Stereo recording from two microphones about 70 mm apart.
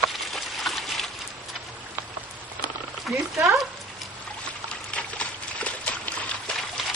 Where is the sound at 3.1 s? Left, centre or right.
Centre.